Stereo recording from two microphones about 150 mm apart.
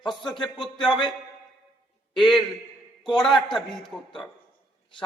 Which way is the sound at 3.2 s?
Centre (ahead or behind).